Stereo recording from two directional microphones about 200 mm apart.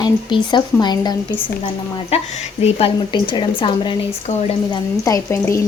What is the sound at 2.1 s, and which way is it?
A woman's voice, 30° left (ahead or behind).